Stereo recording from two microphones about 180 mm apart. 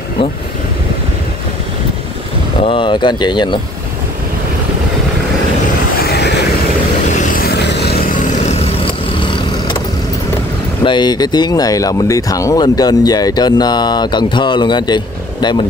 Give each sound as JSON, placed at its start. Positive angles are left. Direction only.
{"t": 2.6, "sound": "speech", "side_deg": 30}
{"t": 5.9, "sound": "vehicle", "side_deg": 65}
{"t": 8.3, "sound": "vehicle", "side_deg": 35}
{"t": 10.9, "sound": "speech", "side_deg": 25}